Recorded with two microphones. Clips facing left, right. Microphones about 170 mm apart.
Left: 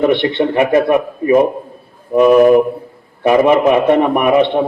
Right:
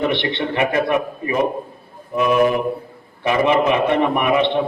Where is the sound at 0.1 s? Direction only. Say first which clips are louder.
Left 8 dB; 50° left (ahead or behind).